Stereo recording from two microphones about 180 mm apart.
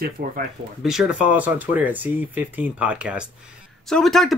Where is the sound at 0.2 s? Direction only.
50° right (ahead or behind).